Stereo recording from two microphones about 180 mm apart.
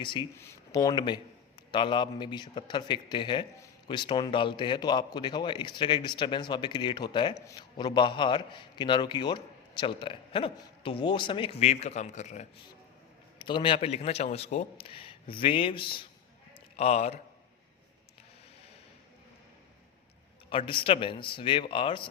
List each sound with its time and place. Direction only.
0.0 s a man's voice: 25° left (ahead or behind)
0.3 s a man's voice: 15° left (ahead or behind); by 12.6 s 40° left (ahead or behind)
13.4 s a man's voice: 25° left (ahead or behind)
20.5 s a man's voice: 30° left (ahead or behind)